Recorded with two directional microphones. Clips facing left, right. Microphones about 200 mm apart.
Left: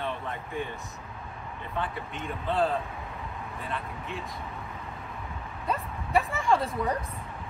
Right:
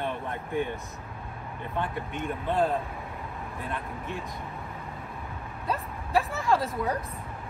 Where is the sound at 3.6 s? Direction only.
50° right (ahead or behind).